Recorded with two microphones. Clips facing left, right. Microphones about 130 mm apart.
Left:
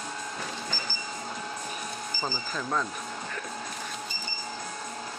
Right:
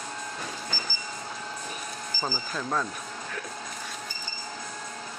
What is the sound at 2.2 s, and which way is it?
Speech, 5° right (ahead or behind).